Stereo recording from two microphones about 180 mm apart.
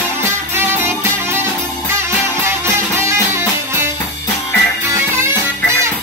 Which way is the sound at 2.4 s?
15° right (ahead or behind).